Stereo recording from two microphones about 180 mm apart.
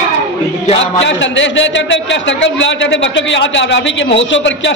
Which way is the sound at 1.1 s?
90° left.